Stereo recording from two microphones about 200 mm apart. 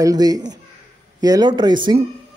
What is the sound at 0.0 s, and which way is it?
A woman's voice, 20° right (ahead or behind).